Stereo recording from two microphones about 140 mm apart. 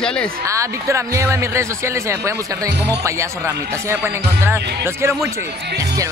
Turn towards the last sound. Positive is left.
turn(degrees=-15)  # may be behind; listen again after turning